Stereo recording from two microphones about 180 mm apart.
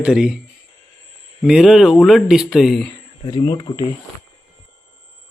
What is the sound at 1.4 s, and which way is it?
A man's voice, 5° right (ahead or behind).